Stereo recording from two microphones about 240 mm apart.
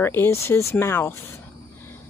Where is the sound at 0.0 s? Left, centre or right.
Centre.